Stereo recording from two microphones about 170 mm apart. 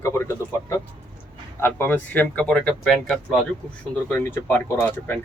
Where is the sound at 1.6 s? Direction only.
10° left (ahead or behind).